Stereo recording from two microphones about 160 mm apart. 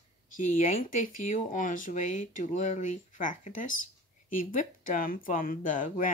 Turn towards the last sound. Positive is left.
turn(degrees=55)  # may be behind; listen again after turning